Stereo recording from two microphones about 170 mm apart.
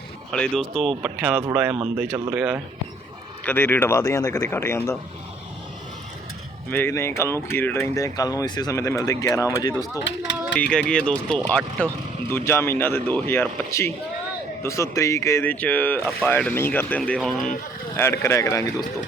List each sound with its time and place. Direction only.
0.3 s speech: 5° left (ahead or behind)
3.4 s speech: 10° left (ahead or behind)
6.7 s speech: 10° left (ahead or behind)
10.6 s speech: 5° left (ahead or behind)
17.9 s speech: 15° left (ahead or behind)